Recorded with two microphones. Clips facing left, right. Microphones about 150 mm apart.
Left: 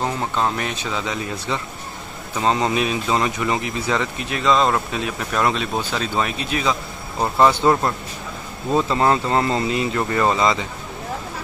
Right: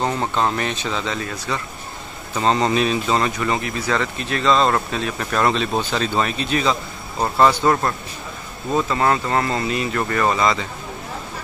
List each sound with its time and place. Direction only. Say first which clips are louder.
0.0 s speech: right 1 dB; centre (ahead or behind)
2.3 s speech: right 1 dB; 5° left (ahead or behind)